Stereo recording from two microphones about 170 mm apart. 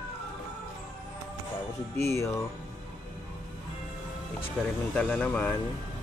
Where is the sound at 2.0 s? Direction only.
15° left (ahead or behind).